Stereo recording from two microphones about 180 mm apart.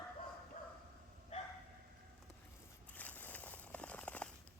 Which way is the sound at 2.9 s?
10° left (ahead or behind).